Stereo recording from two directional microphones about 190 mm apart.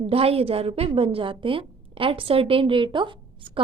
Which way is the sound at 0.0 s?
30° right (ahead or behind).